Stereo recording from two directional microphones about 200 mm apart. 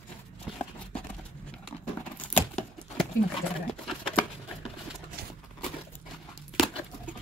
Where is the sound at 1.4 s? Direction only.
5° left (ahead or behind).